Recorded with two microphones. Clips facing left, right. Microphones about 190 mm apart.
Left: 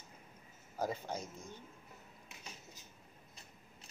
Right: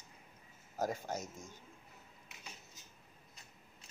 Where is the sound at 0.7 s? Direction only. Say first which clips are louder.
Right 1 dB; 10° right (ahead or behind).